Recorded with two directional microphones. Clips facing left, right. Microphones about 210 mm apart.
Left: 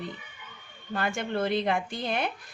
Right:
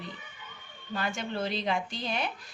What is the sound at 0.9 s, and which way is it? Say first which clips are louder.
Speech: left 4 dB; 55° left (ahead or behind).